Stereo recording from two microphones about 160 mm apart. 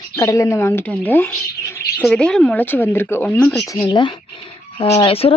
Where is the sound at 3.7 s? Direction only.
25° left (ahead or behind).